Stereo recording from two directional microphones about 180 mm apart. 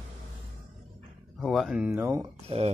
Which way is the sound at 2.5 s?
35° right (ahead or behind).